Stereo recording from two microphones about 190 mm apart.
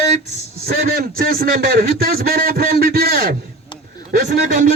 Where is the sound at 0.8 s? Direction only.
50° right (ahead or behind).